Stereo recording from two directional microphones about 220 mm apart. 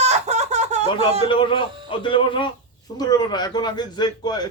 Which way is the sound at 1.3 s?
20° left (ahead or behind).